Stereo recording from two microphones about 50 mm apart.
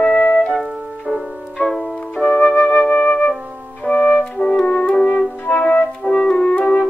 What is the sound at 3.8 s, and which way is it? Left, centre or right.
Music, left.